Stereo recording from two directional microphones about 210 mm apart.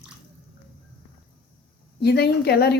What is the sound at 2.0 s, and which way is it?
Speech, 50° left (ahead or behind).